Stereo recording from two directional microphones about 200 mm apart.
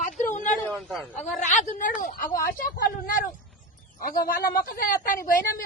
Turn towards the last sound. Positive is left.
turn(degrees=45)  # may be behind; listen again after turning